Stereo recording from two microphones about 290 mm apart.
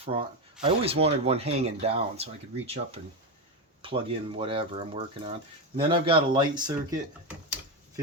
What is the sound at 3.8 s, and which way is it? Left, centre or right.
Speech, centre.